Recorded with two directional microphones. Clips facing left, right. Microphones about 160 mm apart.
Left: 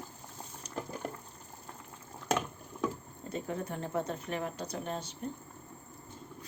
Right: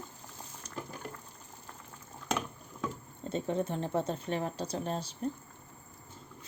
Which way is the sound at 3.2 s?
25° right (ahead or behind).